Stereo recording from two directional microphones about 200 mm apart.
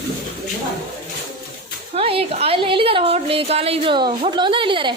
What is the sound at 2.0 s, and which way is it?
A woman's voice, 30° right (ahead or behind).